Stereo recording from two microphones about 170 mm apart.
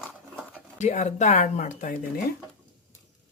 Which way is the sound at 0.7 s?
45° left (ahead or behind).